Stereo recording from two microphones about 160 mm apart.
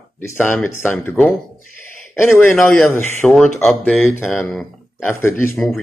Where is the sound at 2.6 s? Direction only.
Centre (ahead or behind).